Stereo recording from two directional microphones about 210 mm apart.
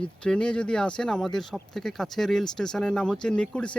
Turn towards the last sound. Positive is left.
turn(degrees=5)  # may be behind; listen again after turning